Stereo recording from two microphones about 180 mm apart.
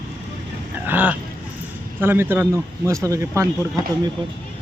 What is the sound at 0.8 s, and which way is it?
A man's voice, 10° right (ahead or behind).